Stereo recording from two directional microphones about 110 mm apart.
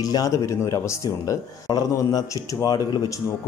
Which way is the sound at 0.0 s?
35° left (ahead or behind).